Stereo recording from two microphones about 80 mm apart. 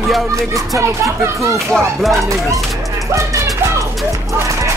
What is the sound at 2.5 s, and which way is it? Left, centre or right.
Speech, right.